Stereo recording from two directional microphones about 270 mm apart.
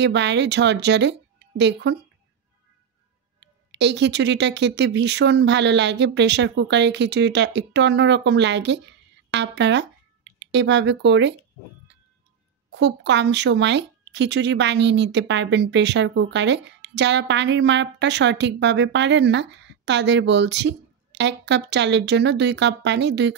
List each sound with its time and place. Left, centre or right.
0.0 s speech: right
3.3 s speech: right
12.7 s speech: right